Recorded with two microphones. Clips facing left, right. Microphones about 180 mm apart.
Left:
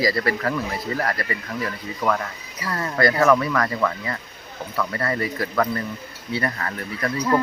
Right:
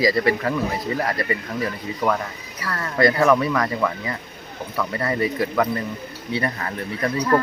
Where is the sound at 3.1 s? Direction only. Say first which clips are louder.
Even; 15° right (ahead or behind).